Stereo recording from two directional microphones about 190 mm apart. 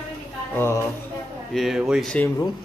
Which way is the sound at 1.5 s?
Centre (ahead or behind).